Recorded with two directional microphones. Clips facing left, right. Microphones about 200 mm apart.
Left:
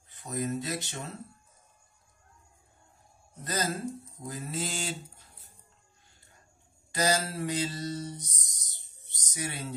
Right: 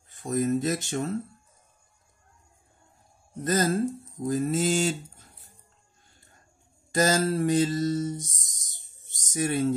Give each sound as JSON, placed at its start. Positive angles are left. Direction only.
{"t": 0.1, "sound": "speech", "side_deg": -45}
{"t": 3.4, "sound": "mantra", "side_deg": -50}
{"t": 6.9, "sound": "mantra", "side_deg": -50}